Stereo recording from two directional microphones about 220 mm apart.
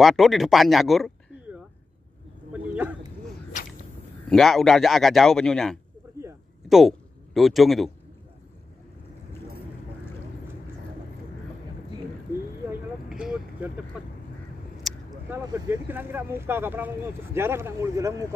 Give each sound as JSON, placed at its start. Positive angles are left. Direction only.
{"t": 0.0, "sound": "speech", "side_deg": 0}
{"t": 3.6, "sound": "whip", "side_deg": 35}
{"t": 4.3, "sound": "a man's voice", "side_deg": 0}
{"t": 13.1, "sound": "a sound", "side_deg": -5}
{"t": 15.0, "sound": "speech", "side_deg": -10}